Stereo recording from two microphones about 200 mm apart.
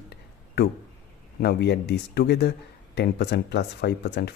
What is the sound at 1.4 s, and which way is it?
Speech, 55° left (ahead or behind).